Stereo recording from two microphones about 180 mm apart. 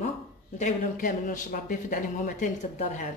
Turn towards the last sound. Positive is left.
turn(degrees=45)  # may be behind; listen again after turning